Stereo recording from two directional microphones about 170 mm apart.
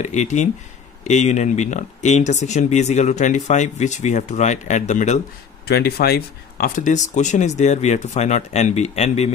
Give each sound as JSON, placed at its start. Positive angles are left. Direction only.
{"t": 0.0, "sound": "speech", "side_deg": 45}
{"t": 5.7, "sound": "speech", "side_deg": 70}